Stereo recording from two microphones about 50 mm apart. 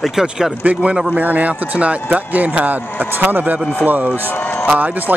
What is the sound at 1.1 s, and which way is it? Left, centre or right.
A man's voice, right.